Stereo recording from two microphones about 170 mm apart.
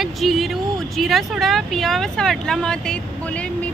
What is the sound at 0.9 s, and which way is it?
Speech, centre (ahead or behind).